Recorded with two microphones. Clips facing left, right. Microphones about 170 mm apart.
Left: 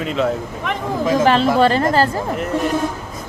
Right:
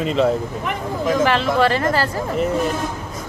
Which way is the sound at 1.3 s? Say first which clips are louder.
Left 3 dB; 30° left (ahead or behind).